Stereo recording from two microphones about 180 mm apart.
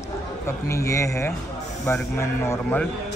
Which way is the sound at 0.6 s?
15° left (ahead or behind).